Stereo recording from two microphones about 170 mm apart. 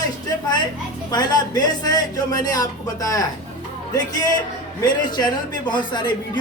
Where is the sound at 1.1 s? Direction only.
25° left (ahead or behind).